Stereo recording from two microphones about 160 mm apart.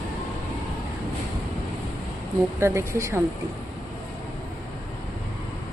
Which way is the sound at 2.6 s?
15° right (ahead or behind).